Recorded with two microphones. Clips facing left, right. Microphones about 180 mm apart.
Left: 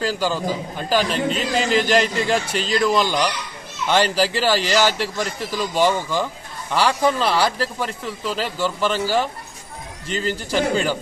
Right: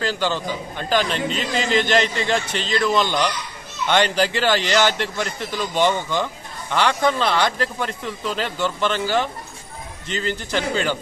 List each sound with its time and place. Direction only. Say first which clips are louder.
0.0 s speech: left 1 dB; 5° left (ahead or behind)